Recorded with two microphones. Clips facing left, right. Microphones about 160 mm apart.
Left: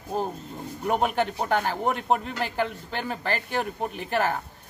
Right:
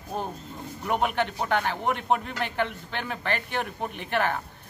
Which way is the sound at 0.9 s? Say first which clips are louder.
Left 1 dB; 40° left (ahead or behind).